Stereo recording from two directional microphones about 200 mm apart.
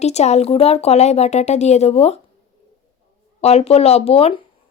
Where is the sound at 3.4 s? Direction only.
30° left (ahead or behind).